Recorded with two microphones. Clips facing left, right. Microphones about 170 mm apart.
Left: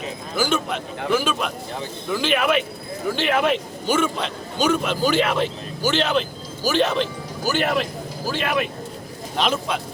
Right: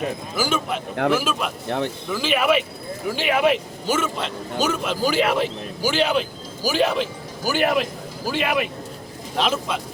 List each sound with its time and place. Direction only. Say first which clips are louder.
0.3 s a man's voice: left 2 dB; 5° right (ahead or behind)
1.6 s speech: right 7 dB; 65° right (ahead or behind)
2.0 s a man's voice: left 1 dB; 5° right (ahead or behind)